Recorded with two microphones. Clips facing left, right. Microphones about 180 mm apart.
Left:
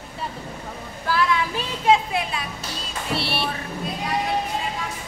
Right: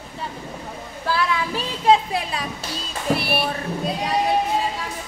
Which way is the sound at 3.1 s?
25° left (ahead or behind).